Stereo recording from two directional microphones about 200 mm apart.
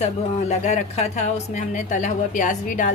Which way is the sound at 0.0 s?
35° left (ahead or behind).